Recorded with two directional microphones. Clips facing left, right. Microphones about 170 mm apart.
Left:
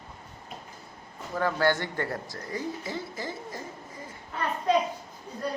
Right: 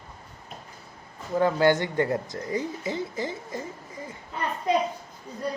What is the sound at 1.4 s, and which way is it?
Speech, 20° right (ahead or behind).